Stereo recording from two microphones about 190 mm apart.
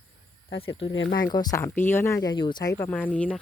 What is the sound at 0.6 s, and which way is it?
Speech, 25° left (ahead or behind).